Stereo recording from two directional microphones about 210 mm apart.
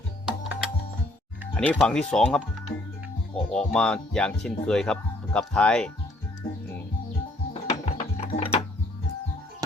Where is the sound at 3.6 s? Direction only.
5° left (ahead or behind).